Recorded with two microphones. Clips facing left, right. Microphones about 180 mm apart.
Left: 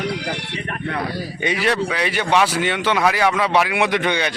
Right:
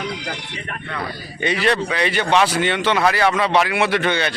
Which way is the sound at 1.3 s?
10° left (ahead or behind).